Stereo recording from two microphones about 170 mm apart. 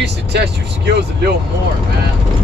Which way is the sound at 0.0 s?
75° right (ahead or behind).